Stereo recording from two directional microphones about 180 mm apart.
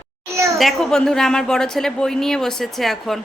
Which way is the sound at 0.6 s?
Centre (ahead or behind).